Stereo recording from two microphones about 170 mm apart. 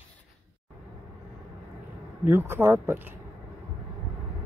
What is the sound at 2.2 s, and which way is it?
Speech, 15° right (ahead or behind).